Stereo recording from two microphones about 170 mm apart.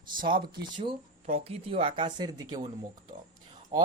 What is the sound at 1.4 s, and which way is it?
Speech, 35° right (ahead or behind).